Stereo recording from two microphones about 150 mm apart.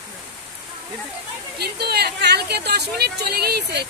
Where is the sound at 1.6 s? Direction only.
90° right.